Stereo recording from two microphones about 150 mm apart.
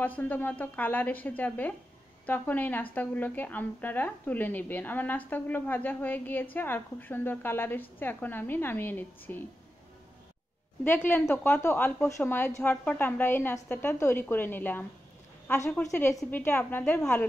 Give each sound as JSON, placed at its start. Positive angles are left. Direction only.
{"t": 0.0, "sound": "a woman's voice", "side_deg": 10}
{"t": 10.8, "sound": "a woman's voice", "side_deg": 15}